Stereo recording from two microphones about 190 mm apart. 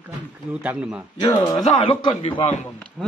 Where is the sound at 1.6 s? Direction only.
30° left (ahead or behind).